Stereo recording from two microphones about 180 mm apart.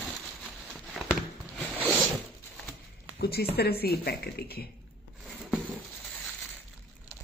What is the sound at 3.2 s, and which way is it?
Speech, 60° left (ahead or behind).